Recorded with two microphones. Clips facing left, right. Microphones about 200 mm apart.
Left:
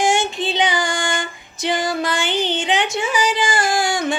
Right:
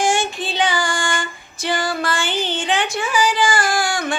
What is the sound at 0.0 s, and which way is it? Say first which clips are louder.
Female singing: left 1 dB; 20° left (ahead or behind).